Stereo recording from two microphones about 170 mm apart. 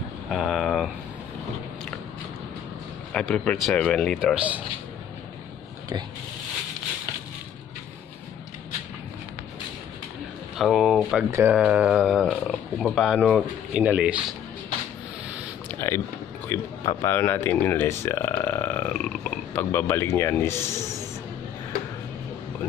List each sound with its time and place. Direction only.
0.3 s a sound: centre (ahead or behind)
3.1 s speech: 5° left (ahead or behind)
4.2 s speech: 5° right (ahead or behind)
10.6 s speech: 5° right (ahead or behind)
15.7 s a sound: 15° left (ahead or behind)
16.4 s speech: 15° left (ahead or behind)